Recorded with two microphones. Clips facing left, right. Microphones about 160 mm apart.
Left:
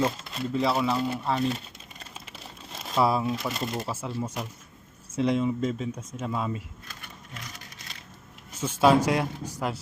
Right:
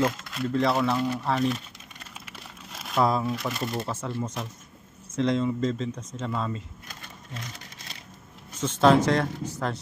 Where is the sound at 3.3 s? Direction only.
20° left (ahead or behind).